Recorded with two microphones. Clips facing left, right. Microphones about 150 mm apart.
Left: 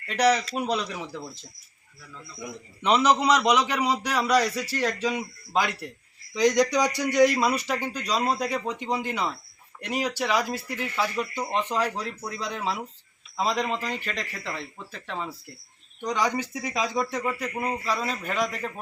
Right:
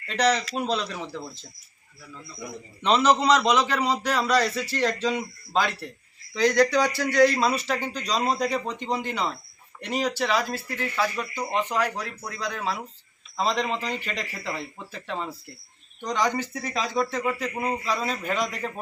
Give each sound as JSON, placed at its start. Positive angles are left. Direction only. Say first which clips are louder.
{"t": 0.1, "sound": "a man's voice", "louder": "left 1 dB", "side_deg": 10}
{"t": 2.8, "sound": "a man's voice", "louder": "right 1 dB", "side_deg": 10}
{"t": 13.3, "sound": "speech", "louder": "right 1 dB", "side_deg": 10}
{"t": 16.0, "sound": "a man's voice", "louder": "right 1 dB", "side_deg": 10}
{"t": 17.2, "sound": "speech", "louder": "right 1 dB", "side_deg": 0}